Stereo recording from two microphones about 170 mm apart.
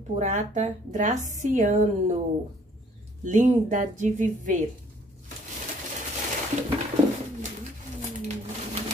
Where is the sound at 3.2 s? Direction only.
45° right (ahead or behind).